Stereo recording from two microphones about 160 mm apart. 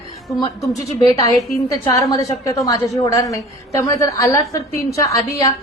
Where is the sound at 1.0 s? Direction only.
20° left (ahead or behind).